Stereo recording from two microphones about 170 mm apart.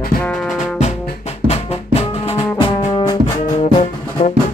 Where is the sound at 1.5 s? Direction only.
40° left (ahead or behind).